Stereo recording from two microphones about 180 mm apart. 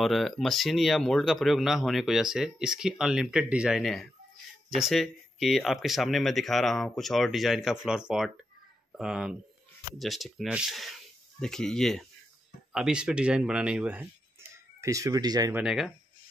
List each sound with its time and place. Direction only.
0.0 s speech: centre (ahead or behind)
14.8 s speech: 20° right (ahead or behind)
15.5 s speech: 5° right (ahead or behind)